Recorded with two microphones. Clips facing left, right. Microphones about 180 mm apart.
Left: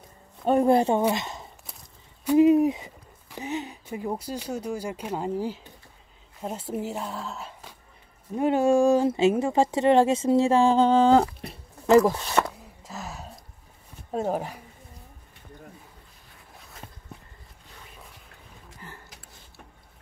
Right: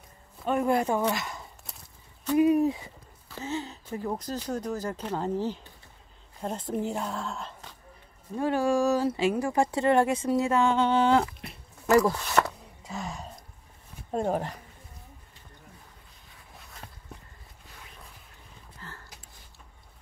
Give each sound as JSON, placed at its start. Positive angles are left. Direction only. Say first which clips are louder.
{"t": 0.5, "sound": "speech", "louder": "left 5 dB", "side_deg": 30}
{"t": 8.4, "sound": "speech", "louder": "left 4 dB", "side_deg": 20}
{"t": 12.4, "sound": "gasp", "louder": "even", "side_deg": 0}
{"t": 14.1, "sound": "speech", "louder": "left 1 dB", "side_deg": 5}
{"t": 18.8, "sound": "a sound", "louder": "left 1 dB", "side_deg": 15}